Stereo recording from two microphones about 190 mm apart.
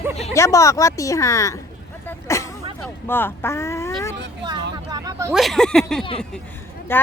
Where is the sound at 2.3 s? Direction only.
15° left (ahead or behind).